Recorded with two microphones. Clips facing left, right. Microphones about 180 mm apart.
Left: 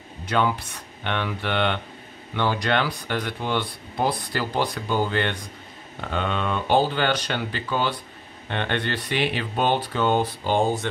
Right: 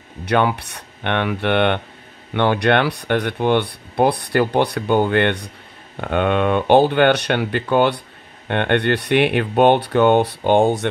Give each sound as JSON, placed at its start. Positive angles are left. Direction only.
{"t": 0.2, "sound": "speech", "side_deg": -65}